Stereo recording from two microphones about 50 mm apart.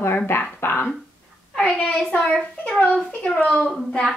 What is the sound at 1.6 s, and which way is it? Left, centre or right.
A woman's voice, left.